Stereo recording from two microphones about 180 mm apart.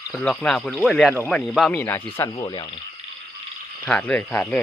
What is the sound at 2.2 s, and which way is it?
Speech, 20° left (ahead or behind).